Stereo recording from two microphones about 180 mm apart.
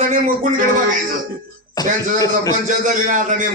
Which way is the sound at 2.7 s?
45° right (ahead or behind).